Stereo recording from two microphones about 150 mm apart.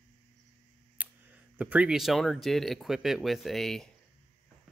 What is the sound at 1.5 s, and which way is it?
Speech, 10° right (ahead or behind).